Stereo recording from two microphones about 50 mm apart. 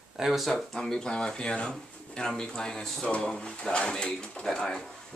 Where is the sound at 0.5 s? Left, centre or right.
Centre.